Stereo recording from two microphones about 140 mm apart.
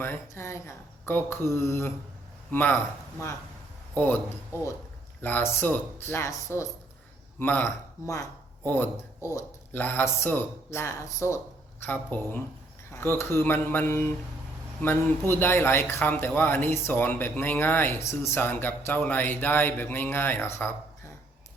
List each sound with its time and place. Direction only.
0.0 s speech: 20° left (ahead or behind)
15.3 s speech: 15° left (ahead or behind)